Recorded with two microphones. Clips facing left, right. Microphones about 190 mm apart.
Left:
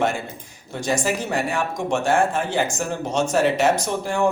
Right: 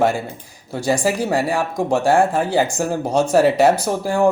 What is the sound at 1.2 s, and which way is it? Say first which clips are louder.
Speech: right 4 dB; 35° right (ahead or behind).